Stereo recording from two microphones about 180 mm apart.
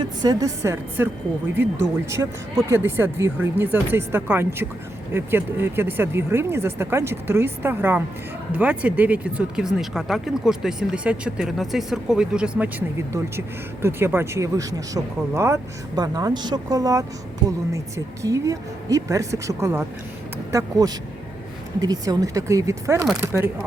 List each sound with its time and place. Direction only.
0.0 s speech: 25° right (ahead or behind); by 12.7 s 5° right (ahead or behind)
13.8 s speech: 15° right (ahead or behind)